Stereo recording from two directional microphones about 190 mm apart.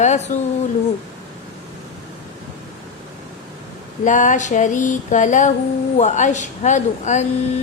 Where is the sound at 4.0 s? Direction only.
40° left (ahead or behind).